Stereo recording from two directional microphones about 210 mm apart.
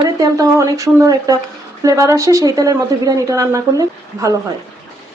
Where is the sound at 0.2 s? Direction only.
15° right (ahead or behind).